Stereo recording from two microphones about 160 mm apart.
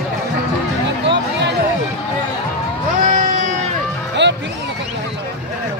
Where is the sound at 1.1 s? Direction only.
90° right.